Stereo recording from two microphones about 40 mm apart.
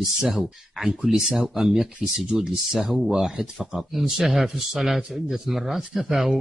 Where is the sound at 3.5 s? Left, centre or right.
Centre.